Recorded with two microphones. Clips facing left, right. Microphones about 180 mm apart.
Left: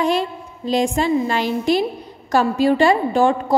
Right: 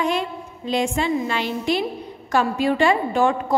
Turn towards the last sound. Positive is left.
turn(degrees=35)  # may be behind; listen again after turning